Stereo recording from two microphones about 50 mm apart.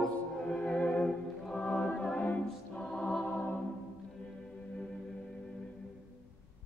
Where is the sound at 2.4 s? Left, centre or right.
Centre.